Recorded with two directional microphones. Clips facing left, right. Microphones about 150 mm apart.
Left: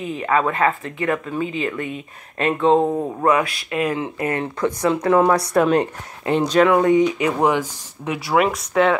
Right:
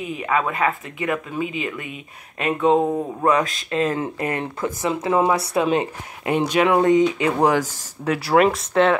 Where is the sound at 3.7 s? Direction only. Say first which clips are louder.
Right 2 dB; 15° left (ahead or behind).